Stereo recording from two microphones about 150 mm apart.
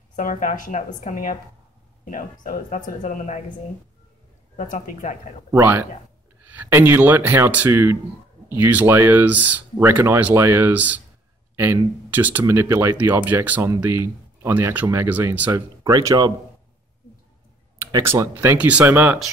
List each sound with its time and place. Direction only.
0.1 s speech: 60° left (ahead or behind)
4.6 s speech: 55° left (ahead or behind)
5.5 s speech: 15° right (ahead or behind)
17.7 s speech: 20° right (ahead or behind)